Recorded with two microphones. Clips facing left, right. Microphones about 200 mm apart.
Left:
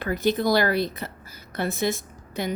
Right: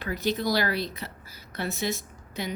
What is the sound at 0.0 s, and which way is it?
A woman's voice, 50° left (ahead or behind).